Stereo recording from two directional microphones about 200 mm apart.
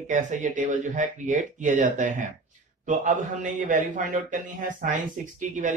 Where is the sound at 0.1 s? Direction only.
40° right (ahead or behind).